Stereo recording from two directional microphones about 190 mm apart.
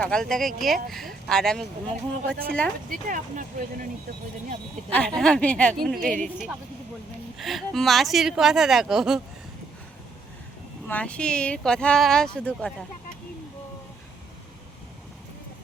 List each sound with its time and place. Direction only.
0.0 s speech: 5° left (ahead or behind)
2.2 s speech: 55° right (ahead or behind)
4.9 s speech: 5° left (ahead or behind)
7.3 s speech: centre (ahead or behind)
10.8 s speech: 5° left (ahead or behind)